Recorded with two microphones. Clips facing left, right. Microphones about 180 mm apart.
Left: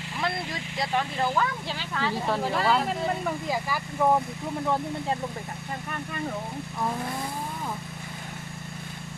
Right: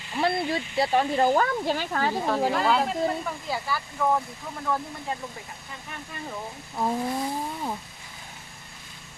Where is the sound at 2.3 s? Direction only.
Centre (ahead or behind).